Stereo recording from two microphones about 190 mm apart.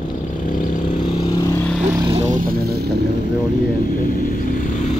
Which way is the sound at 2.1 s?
40° right (ahead or behind).